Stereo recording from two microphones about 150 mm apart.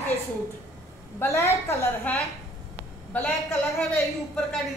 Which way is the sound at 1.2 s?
20° left (ahead or behind).